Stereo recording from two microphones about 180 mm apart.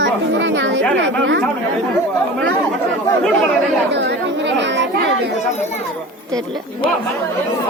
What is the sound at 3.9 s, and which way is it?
Speech, 75° right (ahead or behind).